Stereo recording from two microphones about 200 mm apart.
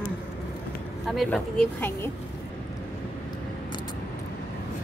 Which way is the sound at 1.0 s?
Centre (ahead or behind).